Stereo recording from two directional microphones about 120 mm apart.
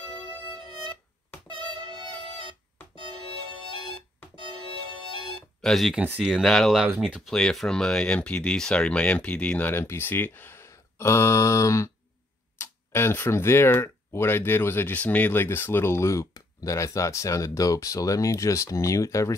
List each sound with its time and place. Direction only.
1.5 s music: 45° right (ahead or behind)
5.6 s speech: centre (ahead or behind); by 19.3 s 25° left (ahead or behind)